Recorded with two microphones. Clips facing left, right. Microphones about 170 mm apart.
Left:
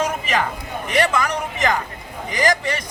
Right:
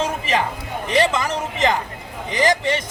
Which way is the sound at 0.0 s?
30° right (ahead or behind).